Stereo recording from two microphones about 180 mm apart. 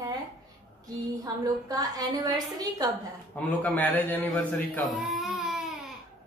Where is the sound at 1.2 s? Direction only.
20° right (ahead or behind).